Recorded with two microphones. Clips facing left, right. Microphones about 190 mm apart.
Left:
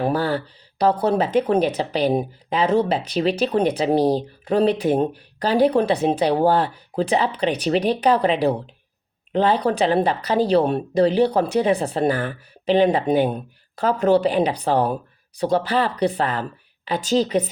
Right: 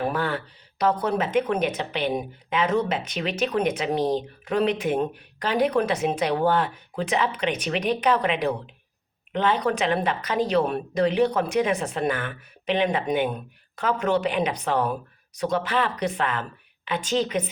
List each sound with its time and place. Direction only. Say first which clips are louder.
0.0 s speech: left 5 dB; 35° left (ahead or behind)